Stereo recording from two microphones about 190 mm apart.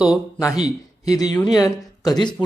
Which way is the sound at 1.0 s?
20° left (ahead or behind).